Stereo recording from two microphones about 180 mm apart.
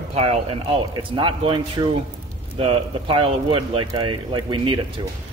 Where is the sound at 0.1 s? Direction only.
35° right (ahead or behind).